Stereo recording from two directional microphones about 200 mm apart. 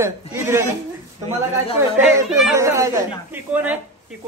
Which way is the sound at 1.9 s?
10° right (ahead or behind).